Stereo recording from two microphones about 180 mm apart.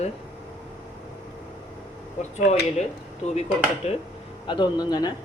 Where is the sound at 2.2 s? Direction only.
40° left (ahead or behind).